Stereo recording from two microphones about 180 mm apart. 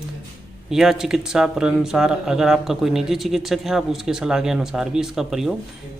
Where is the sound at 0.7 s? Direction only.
Centre (ahead or behind).